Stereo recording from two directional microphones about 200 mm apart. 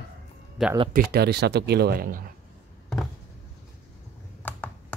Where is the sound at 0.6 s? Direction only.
Centre (ahead or behind).